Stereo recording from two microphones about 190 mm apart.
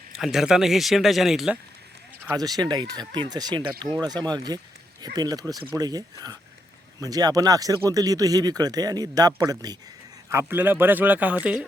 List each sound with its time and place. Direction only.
0.2 s speech: centre (ahead or behind)
2.2 s a man's voice: 20° right (ahead or behind)